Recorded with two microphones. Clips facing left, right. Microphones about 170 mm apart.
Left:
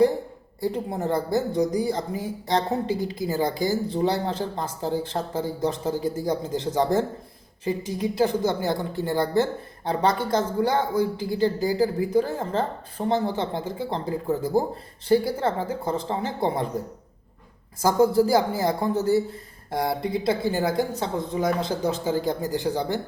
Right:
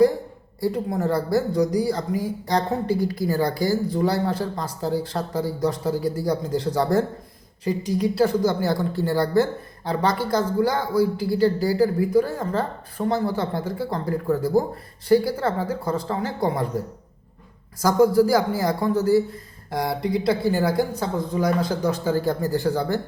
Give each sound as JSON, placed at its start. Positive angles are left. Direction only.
{"t": 0.6, "sound": "speech", "side_deg": 25}
{"t": 17.8, "sound": "speech", "side_deg": 25}